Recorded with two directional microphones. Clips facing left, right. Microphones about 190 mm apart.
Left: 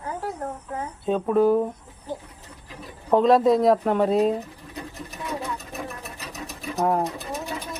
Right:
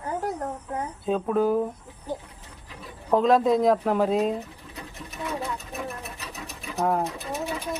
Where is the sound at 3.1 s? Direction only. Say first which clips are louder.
Left 3 dB; centre (ahead or behind).